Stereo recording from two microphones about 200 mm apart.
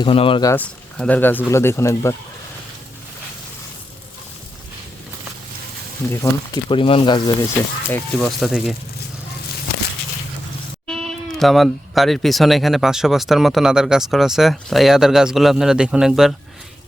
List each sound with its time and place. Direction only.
0.0 s speech: 25° left (ahead or behind)
0.5 s speech: 5° left (ahead or behind)
6.1 s speech: 10° left (ahead or behind)
6.7 s speech: 25° left (ahead or behind)
7.9 s speech: 5° left (ahead or behind)
10.8 s speech: centre (ahead or behind)